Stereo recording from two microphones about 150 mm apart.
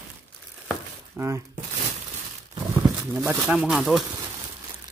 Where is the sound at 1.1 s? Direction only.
15° right (ahead or behind).